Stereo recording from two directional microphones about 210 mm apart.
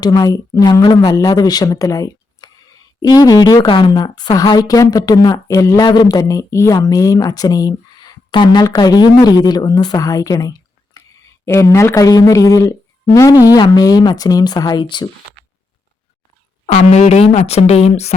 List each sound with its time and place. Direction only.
0.0 s a woman's voice: 15° left (ahead or behind)
11.0 s a sound: 15° left (ahead or behind)
11.4 s a woman's voice: 15° left (ahead or behind)
16.6 s speech: 30° left (ahead or behind)